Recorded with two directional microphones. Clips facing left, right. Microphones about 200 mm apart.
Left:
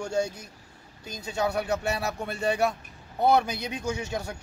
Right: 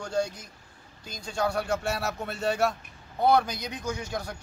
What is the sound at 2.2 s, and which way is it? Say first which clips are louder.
Speech: left 1 dB; centre (ahead or behind).